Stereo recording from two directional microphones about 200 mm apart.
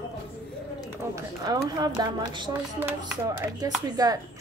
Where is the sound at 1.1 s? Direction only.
20° right (ahead or behind).